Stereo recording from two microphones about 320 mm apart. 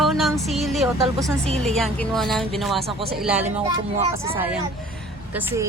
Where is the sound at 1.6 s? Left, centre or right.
Centre.